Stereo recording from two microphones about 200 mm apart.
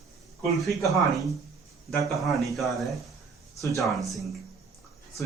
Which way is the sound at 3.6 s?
15° left (ahead or behind).